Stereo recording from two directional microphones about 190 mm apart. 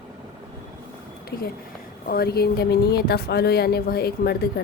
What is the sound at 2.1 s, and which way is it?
Speech, 55° left (ahead or behind).